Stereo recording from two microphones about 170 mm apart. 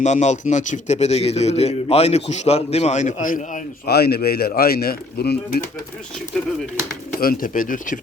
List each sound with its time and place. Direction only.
0.0 s a man's voice: 45° left (ahead or behind); by 5.6 s 65° left (ahead or behind)
6.3 s speech: 5° left (ahead or behind)
7.2 s a man's voice: 55° left (ahead or behind)